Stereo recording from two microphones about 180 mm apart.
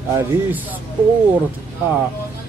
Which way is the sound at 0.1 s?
10° right (ahead or behind).